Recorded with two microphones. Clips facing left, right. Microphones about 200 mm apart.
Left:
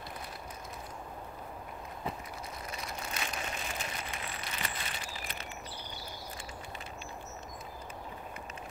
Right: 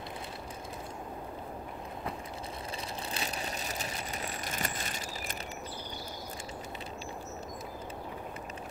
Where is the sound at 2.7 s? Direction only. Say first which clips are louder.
Right 1 dB; 30° right (ahead or behind).